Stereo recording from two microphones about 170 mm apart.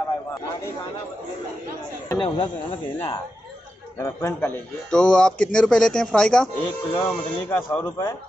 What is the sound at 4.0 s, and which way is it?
Speech, 20° left (ahead or behind).